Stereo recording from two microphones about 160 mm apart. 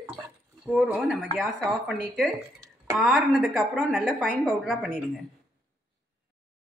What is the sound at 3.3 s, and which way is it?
A woman's voice, 5° right (ahead or behind).